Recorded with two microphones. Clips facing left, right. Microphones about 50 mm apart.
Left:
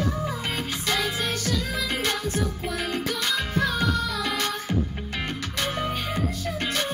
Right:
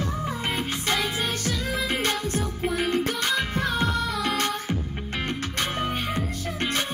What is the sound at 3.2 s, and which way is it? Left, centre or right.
Music, centre.